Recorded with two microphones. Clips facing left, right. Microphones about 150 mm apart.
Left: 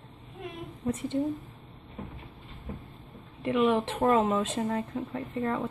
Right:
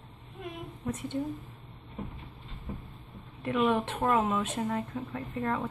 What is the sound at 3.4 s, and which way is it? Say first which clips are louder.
Speech: left 2 dB; 20° left (ahead or behind).